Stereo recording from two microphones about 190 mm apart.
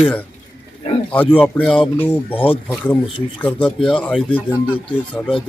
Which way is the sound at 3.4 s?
5° left (ahead or behind).